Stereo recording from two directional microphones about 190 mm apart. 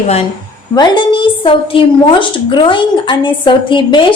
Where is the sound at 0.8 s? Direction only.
25° left (ahead or behind).